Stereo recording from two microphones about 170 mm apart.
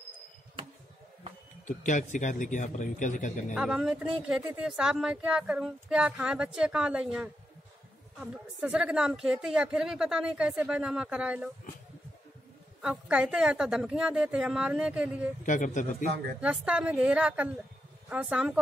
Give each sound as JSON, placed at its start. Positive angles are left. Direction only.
{"t": 1.7, "sound": "a man's voice", "side_deg": 50}
{"t": 3.5, "sound": "a woman's voice", "side_deg": -5}
{"t": 12.8, "sound": "a woman's voice", "side_deg": -5}
{"t": 15.4, "sound": "a man's voice", "side_deg": 50}
{"t": 16.3, "sound": "a woman's voice", "side_deg": -5}